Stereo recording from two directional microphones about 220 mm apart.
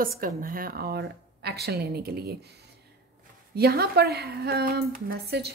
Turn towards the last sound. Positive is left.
turn(degrees=-45)  # may be behind; listen again after turning